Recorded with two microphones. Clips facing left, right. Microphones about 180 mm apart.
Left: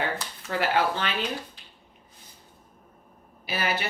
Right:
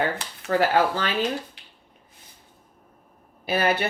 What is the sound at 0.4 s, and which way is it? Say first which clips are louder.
Speech: right 5 dB; 45° right (ahead or behind).